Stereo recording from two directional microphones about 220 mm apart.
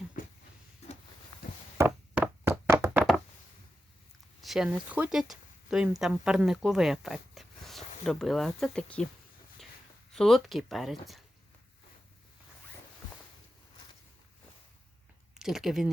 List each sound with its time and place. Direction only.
1.3 s a sound: 20° left (ahead or behind)
1.8 s knock: 10° right (ahead or behind)
4.4 s speech: centre (ahead or behind)
10.1 s speech: centre (ahead or behind)
15.4 s speech: centre (ahead or behind)